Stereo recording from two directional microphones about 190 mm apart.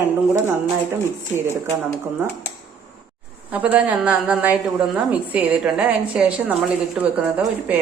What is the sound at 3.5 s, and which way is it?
A woman's voice, 10° right (ahead or behind).